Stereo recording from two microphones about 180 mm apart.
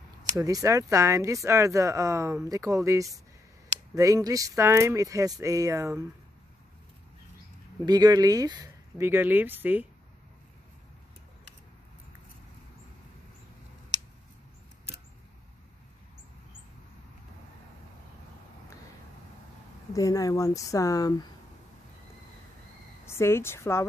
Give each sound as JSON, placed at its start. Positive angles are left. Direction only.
{"t": 0.2, "sound": "speech", "side_deg": -20}
{"t": 7.8, "sound": "speech", "side_deg": -20}
{"t": 19.9, "sound": "speech", "side_deg": 20}
{"t": 23.0, "sound": "a woman's voice", "side_deg": 15}